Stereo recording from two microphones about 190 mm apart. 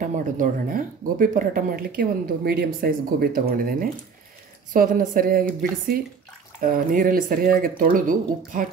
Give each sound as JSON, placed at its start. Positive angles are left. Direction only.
{"t": 0.0, "sound": "speech", "side_deg": -45}
{"t": 6.6, "sound": "speech", "side_deg": -50}